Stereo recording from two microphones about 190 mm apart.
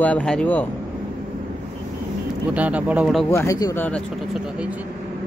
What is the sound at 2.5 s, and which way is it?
Speech, 5° right (ahead or behind).